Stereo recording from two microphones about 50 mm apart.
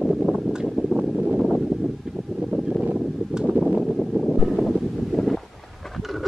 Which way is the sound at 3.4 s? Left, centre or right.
Centre.